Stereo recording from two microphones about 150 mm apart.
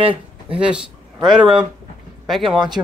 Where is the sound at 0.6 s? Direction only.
5° right (ahead or behind).